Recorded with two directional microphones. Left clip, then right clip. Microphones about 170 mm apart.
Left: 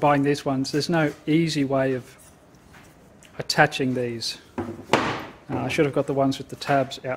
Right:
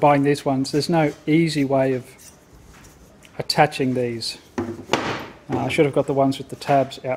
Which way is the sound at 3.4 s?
15° right (ahead or behind).